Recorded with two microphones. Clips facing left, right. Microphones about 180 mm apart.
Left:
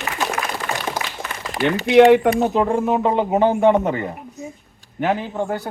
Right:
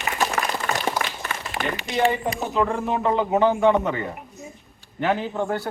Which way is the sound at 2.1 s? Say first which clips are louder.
Left 11 dB; 85° left.